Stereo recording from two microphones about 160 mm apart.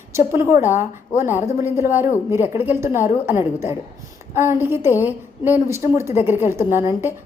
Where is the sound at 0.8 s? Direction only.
15° right (ahead or behind).